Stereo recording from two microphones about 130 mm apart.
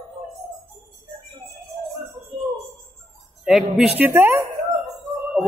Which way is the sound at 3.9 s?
15° right (ahead or behind).